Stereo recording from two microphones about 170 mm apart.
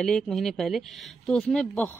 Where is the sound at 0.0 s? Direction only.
Centre (ahead or behind).